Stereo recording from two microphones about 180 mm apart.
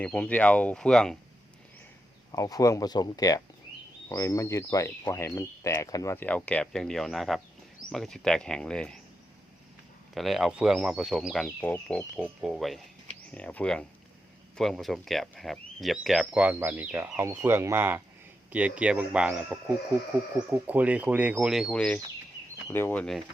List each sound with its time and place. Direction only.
0.0 s speech: 10° left (ahead or behind)
2.3 s speech: 20° left (ahead or behind)
10.2 s speech: centre (ahead or behind)
12.1 s speech: 5° right (ahead or behind)